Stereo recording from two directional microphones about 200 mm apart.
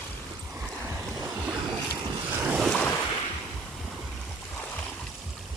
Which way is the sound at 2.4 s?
5° right (ahead or behind).